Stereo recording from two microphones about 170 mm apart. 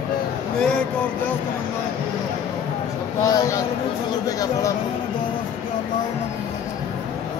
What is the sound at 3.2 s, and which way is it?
Speech, 20° left (ahead or behind).